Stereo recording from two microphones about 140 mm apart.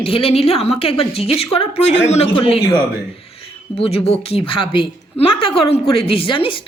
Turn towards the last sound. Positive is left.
turn(degrees=40)  # may be behind; listen again after turning